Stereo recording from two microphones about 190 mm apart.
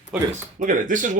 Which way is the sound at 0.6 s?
45° right (ahead or behind).